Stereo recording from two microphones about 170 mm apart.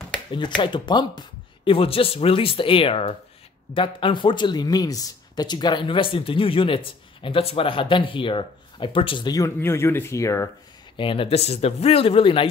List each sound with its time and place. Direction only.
0.3 s speech: 30° left (ahead or behind)
11.0 s speech: 30° left (ahead or behind)